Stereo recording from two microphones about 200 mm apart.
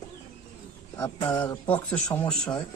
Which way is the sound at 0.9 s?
15° left (ahead or behind).